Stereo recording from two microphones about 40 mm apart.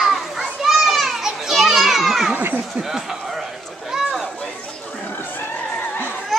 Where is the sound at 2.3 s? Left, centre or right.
Right.